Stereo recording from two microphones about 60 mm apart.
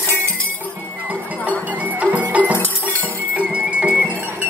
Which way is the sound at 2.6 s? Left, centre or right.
Left.